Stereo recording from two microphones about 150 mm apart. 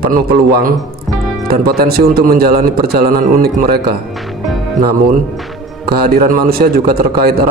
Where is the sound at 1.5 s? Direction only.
90° right.